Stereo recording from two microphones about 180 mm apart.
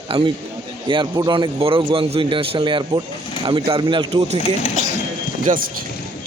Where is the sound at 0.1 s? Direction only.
30° right (ahead or behind).